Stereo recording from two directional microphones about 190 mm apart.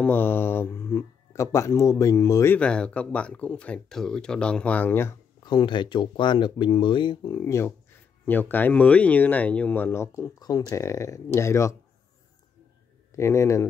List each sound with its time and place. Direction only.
0.0 s speech: 10° left (ahead or behind)
5.4 s speech: 25° left (ahead or behind)
13.1 s speech: 15° left (ahead or behind)